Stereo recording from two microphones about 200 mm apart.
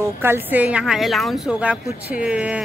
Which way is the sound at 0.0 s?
10° right (ahead or behind).